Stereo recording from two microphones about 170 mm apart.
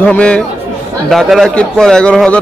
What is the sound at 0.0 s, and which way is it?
A man's voice, 5° left (ahead or behind).